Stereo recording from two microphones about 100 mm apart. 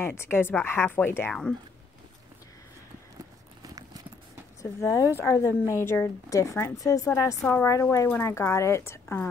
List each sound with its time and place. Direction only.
0.0 s a woman's voice: 25° left (ahead or behind)
4.6 s a woman's voice: 30° left (ahead or behind)